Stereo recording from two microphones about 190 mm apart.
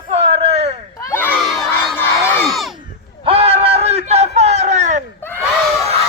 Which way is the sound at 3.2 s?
30° right (ahead or behind).